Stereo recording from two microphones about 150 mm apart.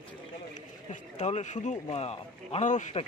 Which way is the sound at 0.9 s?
50° left (ahead or behind).